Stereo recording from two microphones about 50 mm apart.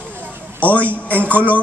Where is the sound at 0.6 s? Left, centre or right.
Left.